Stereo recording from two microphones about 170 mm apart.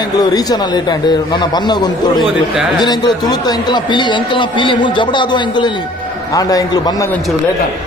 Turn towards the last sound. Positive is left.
turn(degrees=20)  # may be behind; listen again after turning